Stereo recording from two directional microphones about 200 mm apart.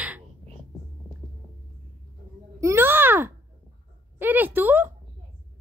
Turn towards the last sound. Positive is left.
turn(degrees=-10)  # may be behind; listen again after turning